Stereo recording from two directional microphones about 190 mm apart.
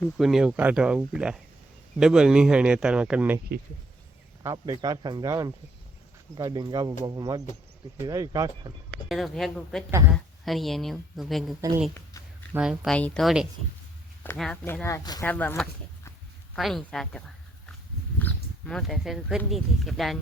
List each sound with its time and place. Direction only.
0.0 s speech: centre (ahead or behind)
4.4 s speech: 20° right (ahead or behind)
9.0 s speech: centre (ahead or behind)
12.5 s speech: centre (ahead or behind)
14.6 s speech: 10° left (ahead or behind)